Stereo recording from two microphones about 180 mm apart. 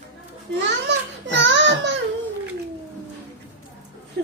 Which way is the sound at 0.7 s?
80° right.